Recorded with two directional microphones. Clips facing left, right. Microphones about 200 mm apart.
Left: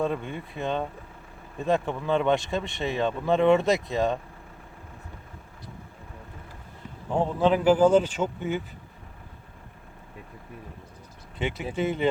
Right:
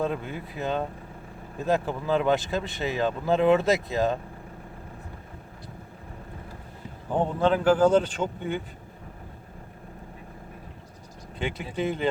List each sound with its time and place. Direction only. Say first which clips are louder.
0.0 s speech: left 1 dB; centre (ahead or behind)
7.1 s speech: left 1 dB; centre (ahead or behind)
11.3 s speech: left 1 dB; centre (ahead or behind)